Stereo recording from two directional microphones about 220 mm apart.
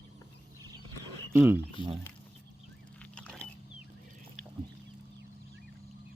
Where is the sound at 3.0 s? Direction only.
5° left (ahead or behind).